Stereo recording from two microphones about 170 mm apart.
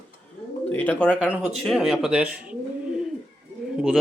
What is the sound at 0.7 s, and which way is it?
Speech, 10° left (ahead or behind).